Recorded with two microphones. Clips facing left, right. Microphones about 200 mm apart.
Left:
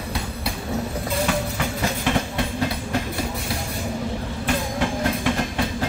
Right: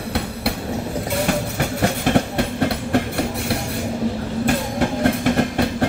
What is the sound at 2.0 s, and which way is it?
Train, 55° right (ahead or behind).